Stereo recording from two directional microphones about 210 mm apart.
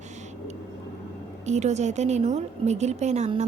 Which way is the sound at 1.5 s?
35° right (ahead or behind).